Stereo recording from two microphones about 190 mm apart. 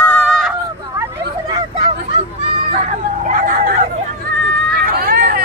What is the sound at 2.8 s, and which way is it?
Hubbub, 40° right (ahead or behind).